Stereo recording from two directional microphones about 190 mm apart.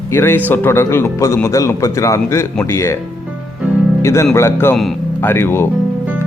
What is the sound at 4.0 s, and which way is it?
Speech, 15° left (ahead or behind).